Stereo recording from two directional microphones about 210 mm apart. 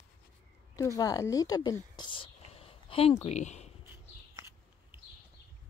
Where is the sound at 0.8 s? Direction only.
15° left (ahead or behind).